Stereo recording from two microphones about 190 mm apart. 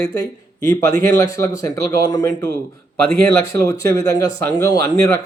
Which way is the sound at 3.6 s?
15° left (ahead or behind).